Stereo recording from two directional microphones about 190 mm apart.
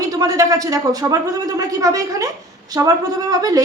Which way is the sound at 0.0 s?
20° right (ahead or behind).